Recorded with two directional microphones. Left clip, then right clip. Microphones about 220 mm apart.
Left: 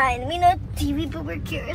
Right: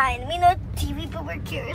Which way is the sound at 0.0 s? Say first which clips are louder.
Left 1 dB; 10° right (ahead or behind).